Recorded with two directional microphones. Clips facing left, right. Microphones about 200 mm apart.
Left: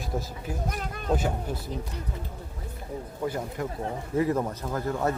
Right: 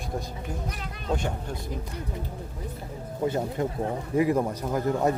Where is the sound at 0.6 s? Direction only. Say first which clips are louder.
Left 3 dB; 45° left (ahead or behind).